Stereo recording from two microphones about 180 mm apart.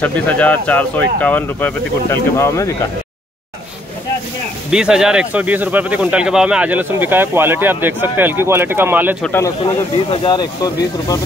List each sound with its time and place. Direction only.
0.0 s speech: 10° left (ahead or behind)
4.6 s speech: 5° right (ahead or behind)
9.2 s speech: 10° left (ahead or behind)
10.1 s speech: 25° left (ahead or behind)